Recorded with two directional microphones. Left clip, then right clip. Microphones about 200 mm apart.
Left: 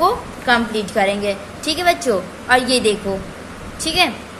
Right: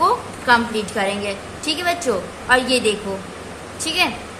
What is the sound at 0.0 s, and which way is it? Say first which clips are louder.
A woman's voice: left 1 dB; 10° left (ahead or behind).